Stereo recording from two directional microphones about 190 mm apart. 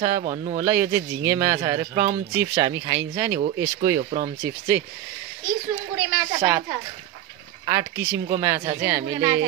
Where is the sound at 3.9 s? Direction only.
40° right (ahead or behind).